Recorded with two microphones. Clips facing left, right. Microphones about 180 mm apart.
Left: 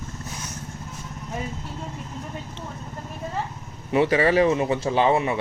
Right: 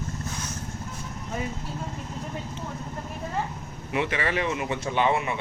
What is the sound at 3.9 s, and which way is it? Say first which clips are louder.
Speech: left 8 dB; 35° left (ahead or behind).